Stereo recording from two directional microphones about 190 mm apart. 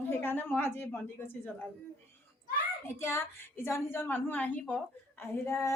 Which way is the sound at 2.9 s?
15° left (ahead or behind).